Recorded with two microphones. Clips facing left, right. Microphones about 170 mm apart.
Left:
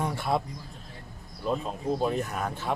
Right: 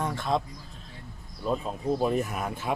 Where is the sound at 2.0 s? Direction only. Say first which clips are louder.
Right 1 dB; 5° right (ahead or behind).